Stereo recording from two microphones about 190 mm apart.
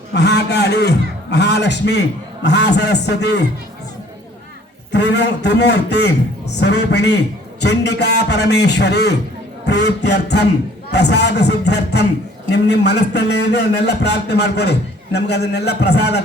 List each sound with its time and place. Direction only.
0.1 s a man's voice: 60° left (ahead or behind)
4.9 s a man's voice: 65° left (ahead or behind)